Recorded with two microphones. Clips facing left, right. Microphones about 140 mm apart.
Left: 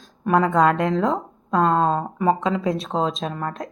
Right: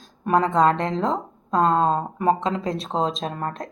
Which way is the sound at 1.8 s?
10° right (ahead or behind).